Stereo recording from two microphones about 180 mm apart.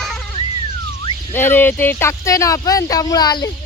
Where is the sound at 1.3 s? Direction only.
10° left (ahead or behind).